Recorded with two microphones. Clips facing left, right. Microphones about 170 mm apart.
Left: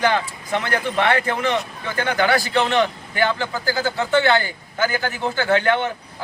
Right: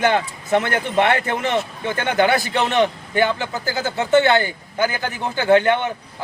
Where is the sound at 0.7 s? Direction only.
25° right (ahead or behind).